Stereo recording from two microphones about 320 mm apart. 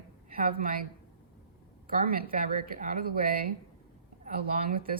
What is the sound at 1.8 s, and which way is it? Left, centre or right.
Speech, right.